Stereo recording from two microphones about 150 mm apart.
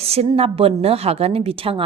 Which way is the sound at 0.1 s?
40° right (ahead or behind).